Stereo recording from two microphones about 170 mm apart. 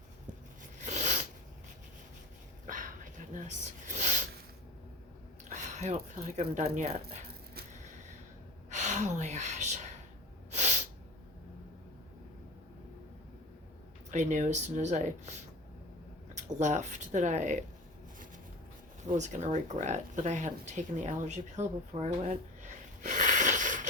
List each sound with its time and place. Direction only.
0.6 s a sound: 45° right (ahead or behind)
2.6 s dog: 50° right (ahead or behind)
5.5 s speech: 45° right (ahead or behind)
8.7 s gasp: 45° right (ahead or behind)
10.5 s snort: 45° right (ahead or behind)
14.1 s speech: 45° right (ahead or behind)
16.3 s speech: 45° right (ahead or behind)
19.1 s speech: 45° right (ahead or behind)